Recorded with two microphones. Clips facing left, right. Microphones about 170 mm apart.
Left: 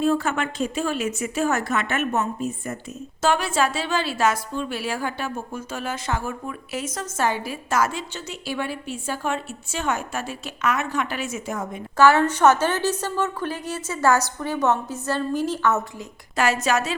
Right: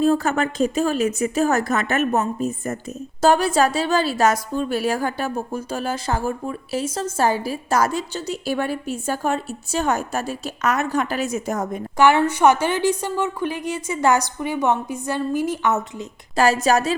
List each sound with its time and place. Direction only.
0.0 s a woman's voice: 40° right (ahead or behind)
11.9 s a woman's voice: 15° right (ahead or behind)
16.3 s a woman's voice: 35° right (ahead or behind)